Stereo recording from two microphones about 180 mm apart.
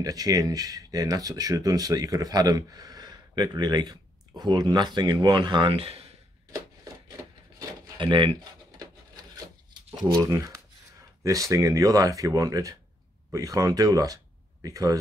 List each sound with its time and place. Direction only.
0.0 s speech: 20° right (ahead or behind)
8.0 s speech: 25° right (ahead or behind)
9.7 s a sound: 25° right (ahead or behind)
10.2 s speech: 20° right (ahead or behind)